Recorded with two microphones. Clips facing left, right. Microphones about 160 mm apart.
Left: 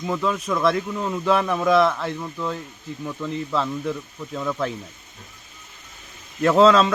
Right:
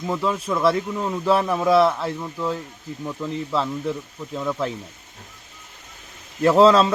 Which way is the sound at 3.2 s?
Centre (ahead or behind).